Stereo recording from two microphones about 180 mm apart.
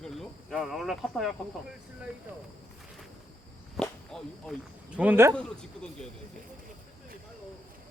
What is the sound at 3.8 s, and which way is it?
Speech, centre (ahead or behind).